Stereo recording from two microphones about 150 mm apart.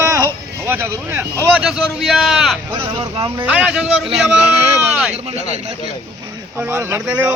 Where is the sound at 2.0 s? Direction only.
Centre (ahead or behind).